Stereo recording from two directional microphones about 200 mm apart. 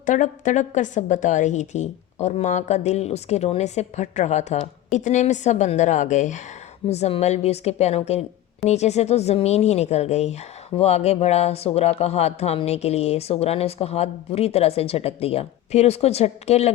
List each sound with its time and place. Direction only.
0.0 s a woman's voice: 40° left (ahead or behind)